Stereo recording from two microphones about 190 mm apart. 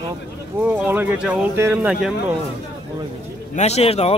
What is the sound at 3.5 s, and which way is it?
Speech, 35° left (ahead or behind).